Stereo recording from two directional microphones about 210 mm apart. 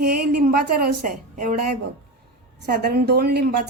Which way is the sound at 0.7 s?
45° right (ahead or behind).